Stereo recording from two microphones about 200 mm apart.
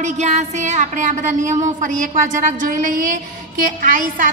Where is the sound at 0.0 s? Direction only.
35° right (ahead or behind).